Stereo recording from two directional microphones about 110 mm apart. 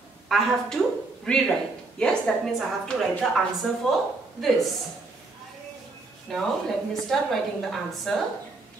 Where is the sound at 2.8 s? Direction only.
Centre (ahead or behind).